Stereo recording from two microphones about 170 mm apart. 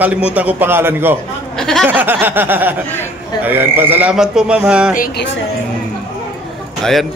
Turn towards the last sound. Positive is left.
turn(degrees=5)  # may be behind; listen again after turning